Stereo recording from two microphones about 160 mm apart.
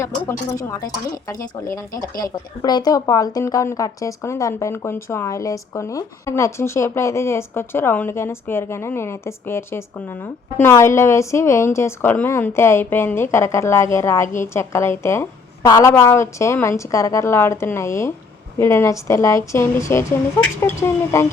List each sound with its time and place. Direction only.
0.0 s a woman's voice: 20° left (ahead or behind)
2.0 s speech: 25° left (ahead or behind)